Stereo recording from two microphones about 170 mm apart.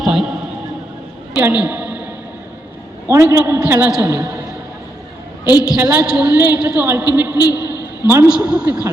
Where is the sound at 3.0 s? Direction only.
15° right (ahead or behind).